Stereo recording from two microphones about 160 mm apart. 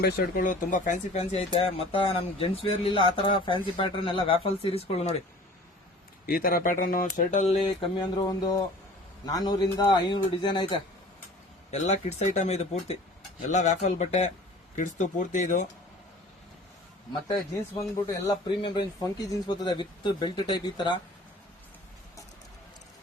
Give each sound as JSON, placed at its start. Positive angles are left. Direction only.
{"t": 0.0, "sound": "speech", "side_deg": 60}
{"t": 1.2, "sound": "speech", "side_deg": 35}
{"t": 6.2, "sound": "speech", "side_deg": 65}
{"t": 7.8, "sound": "speech", "side_deg": 25}
{"t": 11.7, "sound": "speech", "side_deg": 45}
{"t": 17.7, "sound": "speech", "side_deg": 20}